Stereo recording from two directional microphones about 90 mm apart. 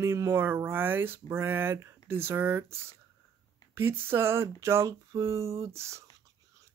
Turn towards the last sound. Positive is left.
turn(degrees=-30)  # may be behind; listen again after turning